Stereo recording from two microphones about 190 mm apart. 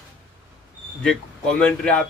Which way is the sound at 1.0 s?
5° left (ahead or behind).